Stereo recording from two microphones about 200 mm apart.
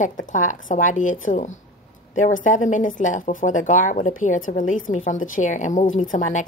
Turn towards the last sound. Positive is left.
turn(degrees=40)  # may be behind; listen again after turning